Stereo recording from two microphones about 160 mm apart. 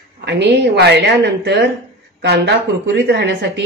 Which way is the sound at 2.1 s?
90° right.